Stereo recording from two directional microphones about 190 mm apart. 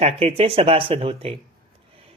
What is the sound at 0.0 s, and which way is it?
Speech, 30° right (ahead or behind).